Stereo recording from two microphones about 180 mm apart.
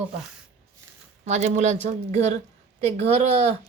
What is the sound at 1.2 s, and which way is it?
Speech, 40° right (ahead or behind).